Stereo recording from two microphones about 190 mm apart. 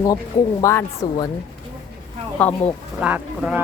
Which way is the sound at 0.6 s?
15° left (ahead or behind).